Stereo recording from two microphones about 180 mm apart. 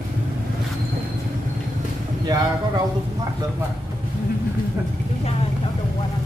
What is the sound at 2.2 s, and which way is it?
Speech, 20° right (ahead or behind).